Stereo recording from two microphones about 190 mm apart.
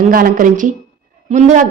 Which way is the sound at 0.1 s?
50° right (ahead or behind).